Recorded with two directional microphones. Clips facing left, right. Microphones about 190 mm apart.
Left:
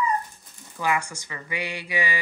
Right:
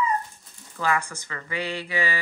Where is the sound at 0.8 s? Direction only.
15° left (ahead or behind).